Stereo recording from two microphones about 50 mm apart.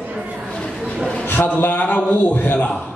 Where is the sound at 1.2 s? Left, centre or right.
Left.